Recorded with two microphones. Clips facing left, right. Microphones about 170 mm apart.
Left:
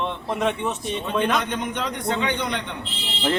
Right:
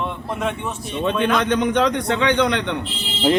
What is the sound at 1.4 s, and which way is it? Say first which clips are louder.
A man's voice: right 9 dB; 85° right.